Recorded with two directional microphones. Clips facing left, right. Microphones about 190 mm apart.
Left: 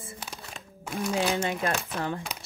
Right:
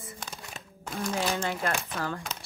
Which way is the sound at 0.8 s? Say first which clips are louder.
Left 3 dB; 10° left (ahead or behind).